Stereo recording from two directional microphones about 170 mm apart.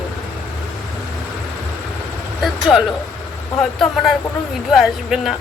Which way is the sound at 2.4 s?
Centre (ahead or behind).